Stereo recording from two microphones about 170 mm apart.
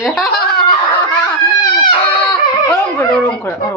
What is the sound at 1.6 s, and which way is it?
Baby cry, 25° left (ahead or behind).